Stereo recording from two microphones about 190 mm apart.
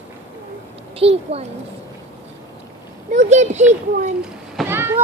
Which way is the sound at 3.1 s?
40° right (ahead or behind).